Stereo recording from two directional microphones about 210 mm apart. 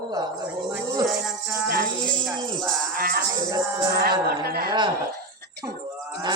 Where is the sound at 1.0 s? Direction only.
5° right (ahead or behind).